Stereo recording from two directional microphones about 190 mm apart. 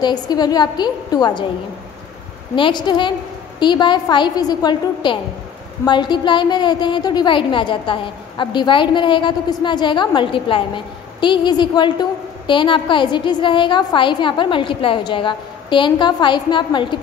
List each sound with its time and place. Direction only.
0.0 s a woman's voice: 20° left (ahead or behind)
2.5 s a woman's voice: 25° left (ahead or behind)